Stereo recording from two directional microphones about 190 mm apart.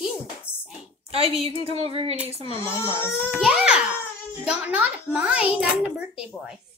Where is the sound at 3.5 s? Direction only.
5° right (ahead or behind).